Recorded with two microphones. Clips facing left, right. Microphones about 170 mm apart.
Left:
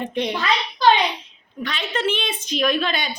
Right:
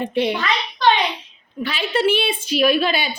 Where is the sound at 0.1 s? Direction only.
5° right (ahead or behind).